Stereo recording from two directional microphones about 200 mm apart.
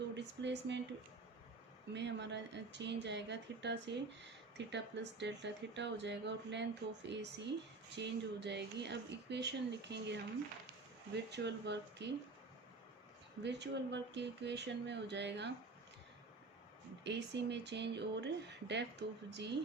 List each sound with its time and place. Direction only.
0.2 s speech: 60° right (ahead or behind)
1.9 s speech: 60° right (ahead or behind)
13.4 s speech: 60° right (ahead or behind)
17.0 s speech: 60° right (ahead or behind)